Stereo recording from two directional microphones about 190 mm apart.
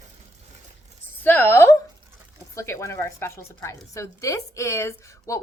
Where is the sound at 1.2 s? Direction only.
10° left (ahead or behind).